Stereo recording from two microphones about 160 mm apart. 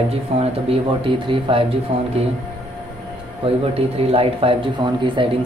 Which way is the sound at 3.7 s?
40° right (ahead or behind).